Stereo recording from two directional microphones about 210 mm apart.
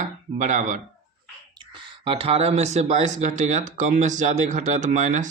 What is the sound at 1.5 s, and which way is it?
A man's voice, 25° right (ahead or behind).